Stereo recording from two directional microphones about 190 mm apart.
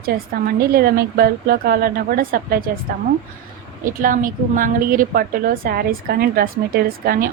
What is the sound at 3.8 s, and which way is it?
A woman's voice, 45° right (ahead or behind).